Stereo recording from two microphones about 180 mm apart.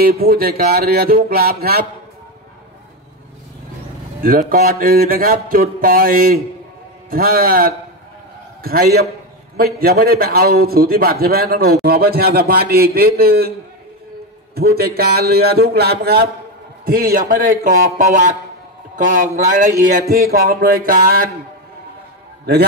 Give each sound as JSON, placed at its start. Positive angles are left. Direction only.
{"t": 0.0, "sound": "a man's voice", "side_deg": -55}
{"t": 4.2, "sound": "speech", "side_deg": -50}
{"t": 9.8, "sound": "a man's voice", "side_deg": -55}